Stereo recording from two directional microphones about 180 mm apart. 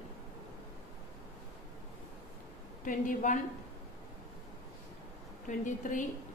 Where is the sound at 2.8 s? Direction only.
45° left (ahead or behind).